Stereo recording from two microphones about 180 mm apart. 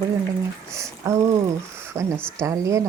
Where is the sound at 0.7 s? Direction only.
15° right (ahead or behind).